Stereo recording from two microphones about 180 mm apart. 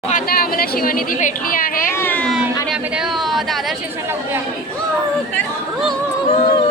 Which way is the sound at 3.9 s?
15° right (ahead or behind).